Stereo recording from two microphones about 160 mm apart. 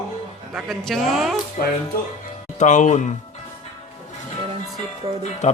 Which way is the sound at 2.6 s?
50° left (ahead or behind).